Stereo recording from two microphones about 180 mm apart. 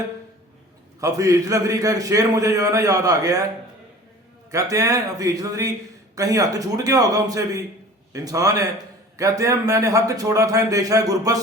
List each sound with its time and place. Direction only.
0.9 s a man's voice: 20° right (ahead or behind)
4.5 s a man's voice: 15° right (ahead or behind)